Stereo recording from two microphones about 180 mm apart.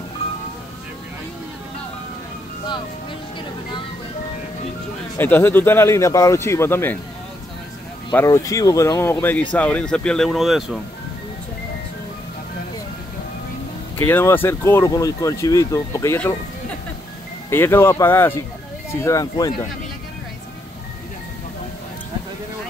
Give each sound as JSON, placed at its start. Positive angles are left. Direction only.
{"t": 5.1, "sound": "speech", "side_deg": 10}
{"t": 8.1, "sound": "speech", "side_deg": 15}
{"t": 13.9, "sound": "speech", "side_deg": 10}
{"t": 17.5, "sound": "speech", "side_deg": 15}